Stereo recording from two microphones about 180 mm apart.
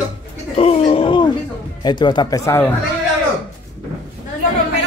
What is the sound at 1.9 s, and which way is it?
Speech, 25° left (ahead or behind).